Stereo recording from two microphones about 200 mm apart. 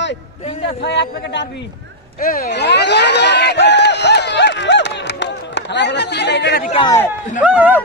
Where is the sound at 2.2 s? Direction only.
45° left (ahead or behind).